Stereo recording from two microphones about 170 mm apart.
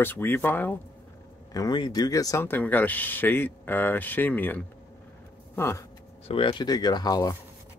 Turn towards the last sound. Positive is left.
turn(degrees=20)  # may be behind; listen again after turning